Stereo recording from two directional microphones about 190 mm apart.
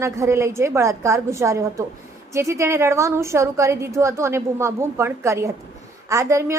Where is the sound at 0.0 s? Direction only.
15° right (ahead or behind).